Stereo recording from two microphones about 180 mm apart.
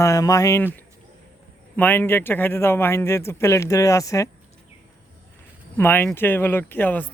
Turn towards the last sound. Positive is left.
turn(degrees=10)  # may be behind; listen again after turning